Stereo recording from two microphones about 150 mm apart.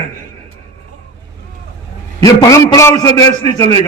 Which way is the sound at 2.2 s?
25° left (ahead or behind).